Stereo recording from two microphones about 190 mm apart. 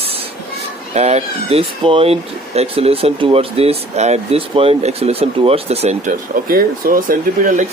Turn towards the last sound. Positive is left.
turn(degrees=-45)  # may be behind; listen again after turning